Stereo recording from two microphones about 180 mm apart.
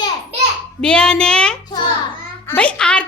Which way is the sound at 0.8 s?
5° left (ahead or behind).